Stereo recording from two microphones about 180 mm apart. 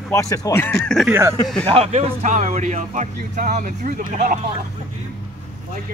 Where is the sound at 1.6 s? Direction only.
35° right (ahead or behind).